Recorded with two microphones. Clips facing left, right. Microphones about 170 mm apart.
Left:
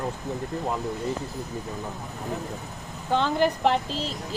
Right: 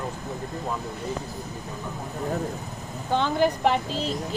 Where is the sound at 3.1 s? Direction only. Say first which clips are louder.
Even; centre (ahead or behind).